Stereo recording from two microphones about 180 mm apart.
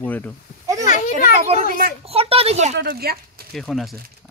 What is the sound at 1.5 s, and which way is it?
Speech, 45° right (ahead or behind).